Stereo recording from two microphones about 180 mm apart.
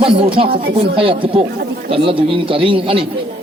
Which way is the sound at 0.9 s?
30° right (ahead or behind).